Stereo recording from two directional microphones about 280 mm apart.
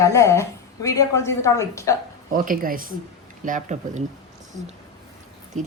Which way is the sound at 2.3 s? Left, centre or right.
Right.